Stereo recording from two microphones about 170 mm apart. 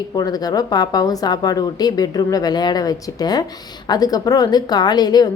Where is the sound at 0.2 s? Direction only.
25° left (ahead or behind).